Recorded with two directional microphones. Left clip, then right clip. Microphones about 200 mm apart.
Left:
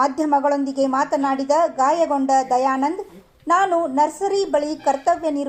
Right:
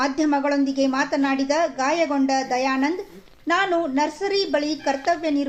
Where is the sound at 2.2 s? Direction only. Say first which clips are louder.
Left 4 dB; 10° left (ahead or behind).